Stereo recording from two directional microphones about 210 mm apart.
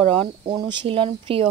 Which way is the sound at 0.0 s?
25° right (ahead or behind).